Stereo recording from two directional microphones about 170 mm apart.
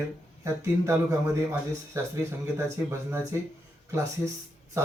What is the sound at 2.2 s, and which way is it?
Speech, 15° right (ahead or behind).